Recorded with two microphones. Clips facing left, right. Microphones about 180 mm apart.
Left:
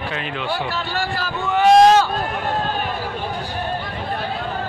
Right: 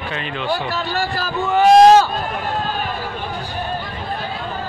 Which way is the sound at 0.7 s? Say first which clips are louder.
Right 2 dB; 40° right (ahead or behind).